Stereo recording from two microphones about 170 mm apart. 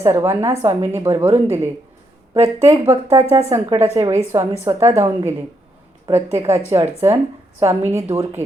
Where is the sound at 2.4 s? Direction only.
40° right (ahead or behind).